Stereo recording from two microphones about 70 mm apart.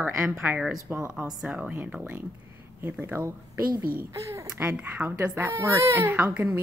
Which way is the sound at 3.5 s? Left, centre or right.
Right.